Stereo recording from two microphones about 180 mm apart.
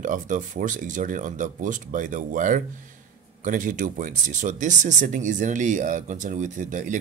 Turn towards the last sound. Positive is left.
turn(degrees=-45)  # may be behind; listen again after turning